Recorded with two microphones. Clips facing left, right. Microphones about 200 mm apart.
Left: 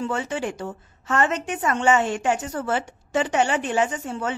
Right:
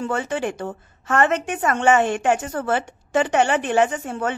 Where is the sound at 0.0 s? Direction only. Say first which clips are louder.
Right 2 dB; 55° right (ahead or behind).